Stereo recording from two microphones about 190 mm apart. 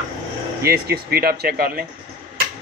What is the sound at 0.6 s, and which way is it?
Speech, 55° right (ahead or behind).